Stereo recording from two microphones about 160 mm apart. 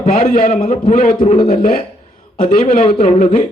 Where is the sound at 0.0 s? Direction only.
65° left (ahead or behind).